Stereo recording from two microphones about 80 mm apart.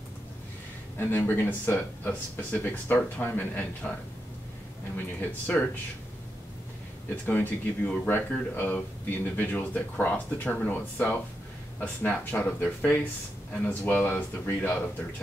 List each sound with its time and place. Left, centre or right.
0.9 s speech: left
4.9 s speech: left
7.2 s speech: left